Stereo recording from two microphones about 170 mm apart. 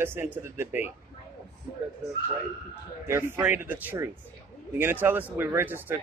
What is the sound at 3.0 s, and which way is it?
Speech, 15° right (ahead or behind).